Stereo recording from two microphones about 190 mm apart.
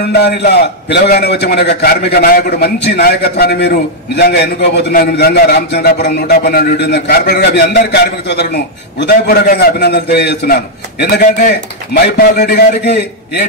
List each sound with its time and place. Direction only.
0.0 s a man's voice: 60° left (ahead or behind)
12.4 s a man's voice: 60° left (ahead or behind)